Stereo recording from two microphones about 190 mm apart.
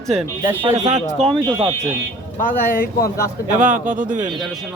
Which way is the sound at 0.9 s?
35° right (ahead or behind).